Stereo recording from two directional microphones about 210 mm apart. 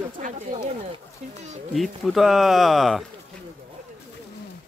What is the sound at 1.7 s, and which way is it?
Speech, centre (ahead or behind).